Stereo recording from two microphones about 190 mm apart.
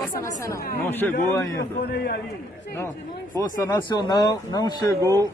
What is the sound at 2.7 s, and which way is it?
Speech, 15° left (ahead or behind).